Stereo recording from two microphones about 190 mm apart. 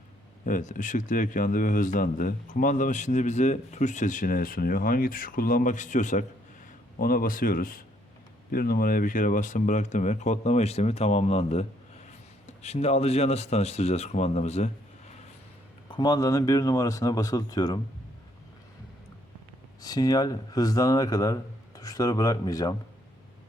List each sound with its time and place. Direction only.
0.4 s a man's voice: 45° left (ahead or behind)
12.6 s speech: 35° left (ahead or behind)
15.9 s speech: 20° left (ahead or behind)
19.8 s speech: 20° left (ahead or behind)